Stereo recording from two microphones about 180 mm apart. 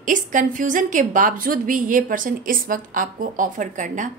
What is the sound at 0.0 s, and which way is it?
A woman's voice, 45° right (ahead or behind).